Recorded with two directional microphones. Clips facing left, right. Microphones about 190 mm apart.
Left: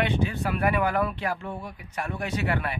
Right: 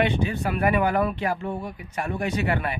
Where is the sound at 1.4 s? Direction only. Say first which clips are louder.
Right 5 dB; 20° right (ahead or behind).